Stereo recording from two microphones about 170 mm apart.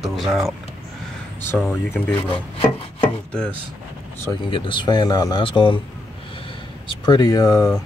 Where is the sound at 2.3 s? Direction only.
30° left (ahead or behind).